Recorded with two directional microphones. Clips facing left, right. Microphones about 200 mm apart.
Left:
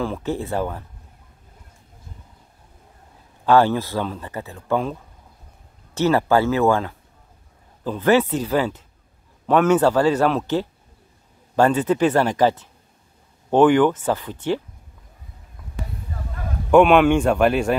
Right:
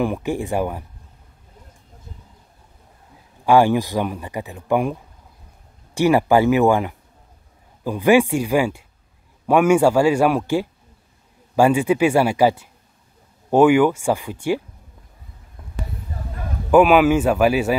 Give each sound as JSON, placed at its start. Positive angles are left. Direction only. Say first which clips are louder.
{"t": 0.0, "sound": "speech", "louder": "right 3 dB", "side_deg": -15}
{"t": 3.4, "sound": "speech", "louder": "right 2 dB", "side_deg": -15}
{"t": 5.9, "sound": "speech", "louder": "right 2 dB", "side_deg": -15}
{"t": 16.7, "sound": "a man's voice", "louder": "even", "side_deg": -5}